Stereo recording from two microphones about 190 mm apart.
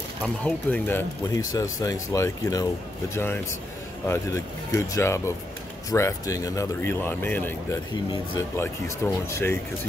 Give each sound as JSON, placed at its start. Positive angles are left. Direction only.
{"t": 0.2, "sound": "speech", "side_deg": 5}
{"t": 4.1, "sound": "speech", "side_deg": 15}
{"t": 7.9, "sound": "speech", "side_deg": 25}
{"t": 8.5, "sound": "speech", "side_deg": 15}